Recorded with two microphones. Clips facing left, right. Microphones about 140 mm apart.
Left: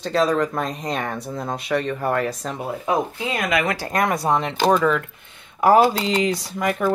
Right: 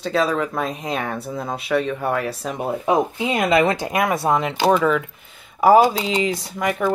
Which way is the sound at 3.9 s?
5° right (ahead or behind).